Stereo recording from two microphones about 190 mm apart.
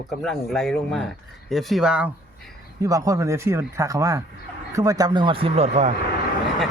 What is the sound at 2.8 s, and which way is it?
A man's voice, 20° right (ahead or behind).